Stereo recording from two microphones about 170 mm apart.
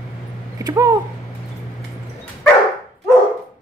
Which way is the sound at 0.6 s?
20° right (ahead or behind).